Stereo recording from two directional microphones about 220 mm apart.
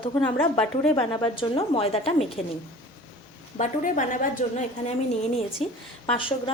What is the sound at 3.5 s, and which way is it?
A woman's voice, 35° left (ahead or behind).